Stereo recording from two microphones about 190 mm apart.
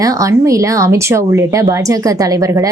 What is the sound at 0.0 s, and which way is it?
Speech, 15° right (ahead or behind).